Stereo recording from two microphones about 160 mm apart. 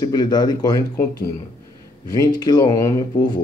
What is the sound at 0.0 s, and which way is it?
Speech, 25° left (ahead or behind).